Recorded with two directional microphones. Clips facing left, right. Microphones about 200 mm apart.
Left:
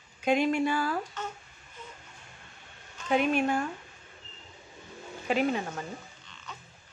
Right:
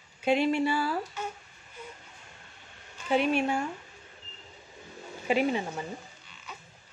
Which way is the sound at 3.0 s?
10° right (ahead or behind).